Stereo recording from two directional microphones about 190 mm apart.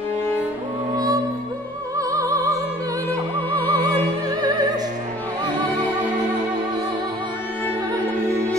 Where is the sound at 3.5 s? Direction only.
20° right (ahead or behind).